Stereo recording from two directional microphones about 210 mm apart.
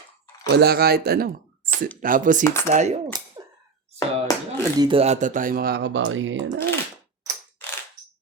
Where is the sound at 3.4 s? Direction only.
20° right (ahead or behind).